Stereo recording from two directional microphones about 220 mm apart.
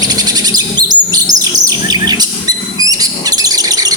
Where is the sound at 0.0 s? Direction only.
15° right (ahead or behind).